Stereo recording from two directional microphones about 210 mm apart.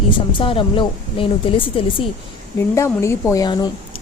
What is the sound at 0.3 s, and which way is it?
Speech, 25° left (ahead or behind).